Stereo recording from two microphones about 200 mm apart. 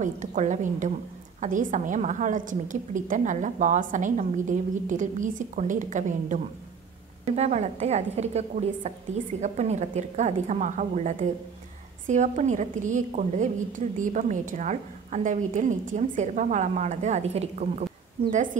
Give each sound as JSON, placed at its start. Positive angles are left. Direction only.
{"t": 0.0, "sound": "a woman's voice", "side_deg": -40}